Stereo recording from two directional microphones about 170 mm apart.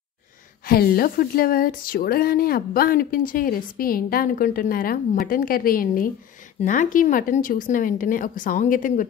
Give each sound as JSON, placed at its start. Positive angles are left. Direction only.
{"t": 0.7, "sound": "a woman's voice", "side_deg": 60}